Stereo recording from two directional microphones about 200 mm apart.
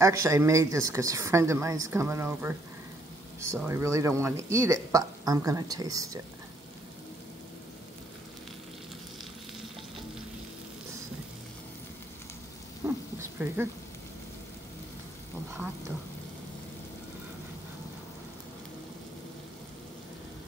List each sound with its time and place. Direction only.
0.0 s a woman's voice: 15° right (ahead or behind)
3.6 s a woman's voice: 15° right (ahead or behind)
12.8 s a sound: 10° right (ahead or behind)